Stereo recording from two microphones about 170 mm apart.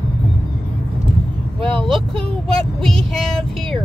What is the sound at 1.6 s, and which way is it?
Vehicle, 5° left (ahead or behind).